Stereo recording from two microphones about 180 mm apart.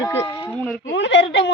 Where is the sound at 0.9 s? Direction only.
75° left (ahead or behind).